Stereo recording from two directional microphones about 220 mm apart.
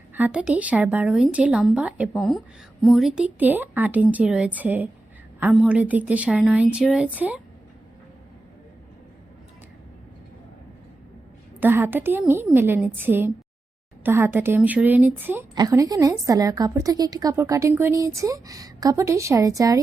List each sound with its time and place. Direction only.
0.1 s a woman's voice: 5° right (ahead or behind)
11.6 s a woman's voice: 10° right (ahead or behind)